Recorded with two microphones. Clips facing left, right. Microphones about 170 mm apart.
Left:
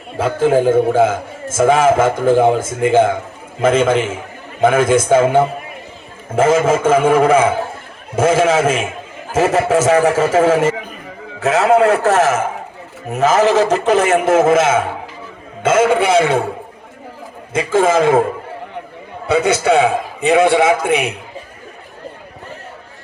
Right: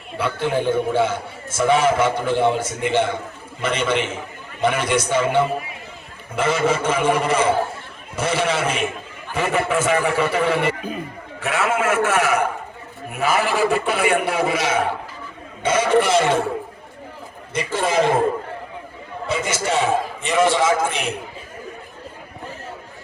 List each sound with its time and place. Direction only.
0.2 s a man's voice: 45° left (ahead or behind)
17.7 s a man's voice: 50° left (ahead or behind)
19.3 s a man's voice: 65° left (ahead or behind)